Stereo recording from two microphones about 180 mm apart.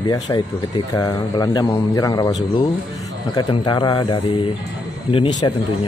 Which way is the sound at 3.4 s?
25° left (ahead or behind).